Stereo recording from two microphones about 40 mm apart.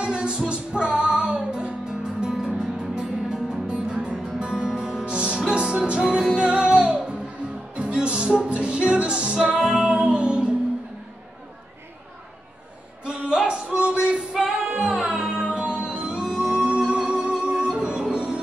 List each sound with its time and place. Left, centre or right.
0.0 s music: right
2.2 s music: centre
4.4 s music: right
13.0 s a sound: right
13.5 s music: right; by 14.7 s centre
14.7 s music: right